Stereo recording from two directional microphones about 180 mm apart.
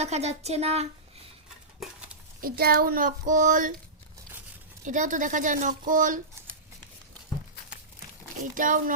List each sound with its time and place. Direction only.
0.0 s speech: 35° right (ahead or behind)
2.4 s a woman's voice: 55° right (ahead or behind)
4.8 s a woman's voice: 45° right (ahead or behind)
8.5 s a woman's voice: 50° right (ahead or behind)